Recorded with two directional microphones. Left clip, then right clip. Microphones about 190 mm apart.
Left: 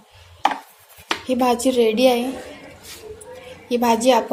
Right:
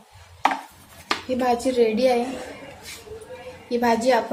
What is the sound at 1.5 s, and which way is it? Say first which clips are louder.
Speech: left 1 dB; 35° left (ahead or behind).